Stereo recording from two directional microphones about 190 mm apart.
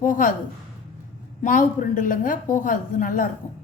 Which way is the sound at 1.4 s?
45° left (ahead or behind).